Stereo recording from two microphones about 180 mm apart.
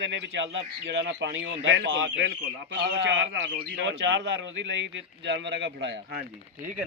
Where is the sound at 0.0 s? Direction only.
90° right.